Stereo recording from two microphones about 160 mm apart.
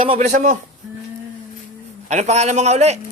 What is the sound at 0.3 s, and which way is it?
Speech, 50° right (ahead or behind).